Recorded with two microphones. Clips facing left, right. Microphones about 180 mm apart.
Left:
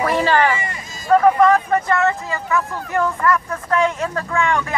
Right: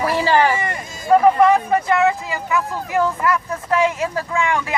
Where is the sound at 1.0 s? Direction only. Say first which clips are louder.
Even; 15° right (ahead or behind).